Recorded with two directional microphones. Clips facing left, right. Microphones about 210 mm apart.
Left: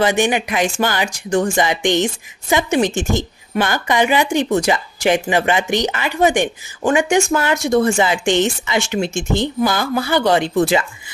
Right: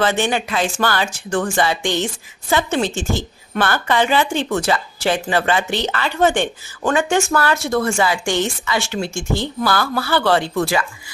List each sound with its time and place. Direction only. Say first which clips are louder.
0.0 s a woman's voice: left 2 dB; 15° left (ahead or behind)